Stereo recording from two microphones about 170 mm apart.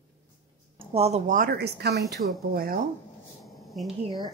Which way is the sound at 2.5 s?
60° right (ahead or behind).